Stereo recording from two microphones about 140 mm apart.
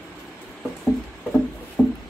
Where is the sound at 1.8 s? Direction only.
Centre (ahead or behind).